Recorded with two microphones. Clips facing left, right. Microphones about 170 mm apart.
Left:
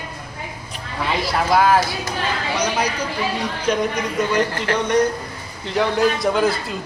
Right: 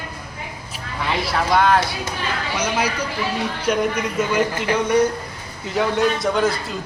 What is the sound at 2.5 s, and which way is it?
Speech, 10° right (ahead or behind).